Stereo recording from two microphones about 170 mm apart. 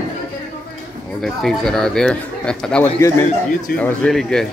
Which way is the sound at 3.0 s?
15° left (ahead or behind).